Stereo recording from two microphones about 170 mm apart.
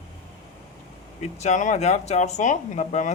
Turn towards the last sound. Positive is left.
turn(degrees=45)  # may be behind; listen again after turning